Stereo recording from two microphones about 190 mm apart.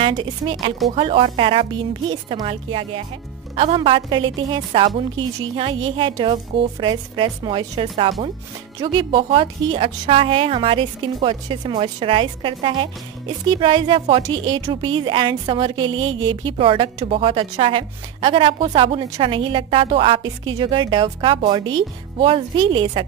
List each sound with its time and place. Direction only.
0.0 s speech: 25° right (ahead or behind)